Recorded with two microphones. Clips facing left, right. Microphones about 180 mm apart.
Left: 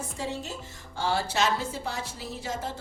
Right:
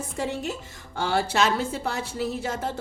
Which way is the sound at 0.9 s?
60° right (ahead or behind).